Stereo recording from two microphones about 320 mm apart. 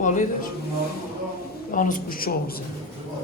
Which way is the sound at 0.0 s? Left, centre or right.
Left.